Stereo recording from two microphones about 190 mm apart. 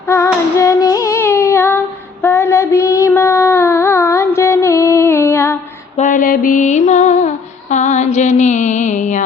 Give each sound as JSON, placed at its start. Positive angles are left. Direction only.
{"t": 0.5, "sound": "singing", "side_deg": 15}
{"t": 2.2, "sound": "child singing", "side_deg": 10}
{"t": 4.4, "sound": "music", "side_deg": 15}
{"t": 6.0, "sound": "music", "side_deg": 45}